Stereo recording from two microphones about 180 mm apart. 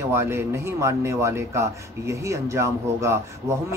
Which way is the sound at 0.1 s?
15° right (ahead or behind).